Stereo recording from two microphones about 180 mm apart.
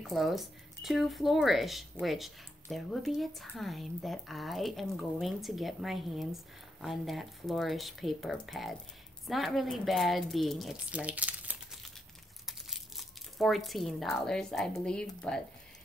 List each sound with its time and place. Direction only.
0.0 s speech: centre (ahead or behind)
12.4 s crumpling: centre (ahead or behind)
14.9 s speech: 5° left (ahead or behind)